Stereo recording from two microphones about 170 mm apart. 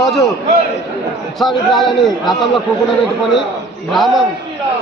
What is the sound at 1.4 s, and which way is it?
Speech, centre (ahead or behind).